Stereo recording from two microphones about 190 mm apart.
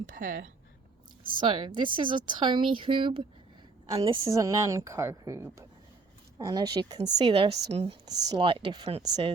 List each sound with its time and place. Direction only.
0.1 s speech: 45° right (ahead or behind)
1.2 s a woman's voice: 25° right (ahead or behind)